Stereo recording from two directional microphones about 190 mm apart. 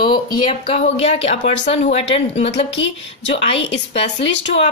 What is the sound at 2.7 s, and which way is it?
A woman's voice, 75° left (ahead or behind).